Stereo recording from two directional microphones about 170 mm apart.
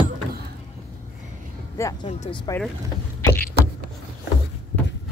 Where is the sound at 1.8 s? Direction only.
20° left (ahead or behind).